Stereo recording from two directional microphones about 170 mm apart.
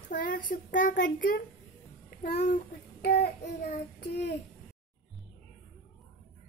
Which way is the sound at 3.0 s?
65° left (ahead or behind).